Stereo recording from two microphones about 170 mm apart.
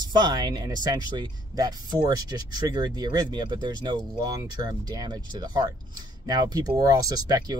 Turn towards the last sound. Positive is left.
turn(degrees=-25)  # may be behind; listen again after turning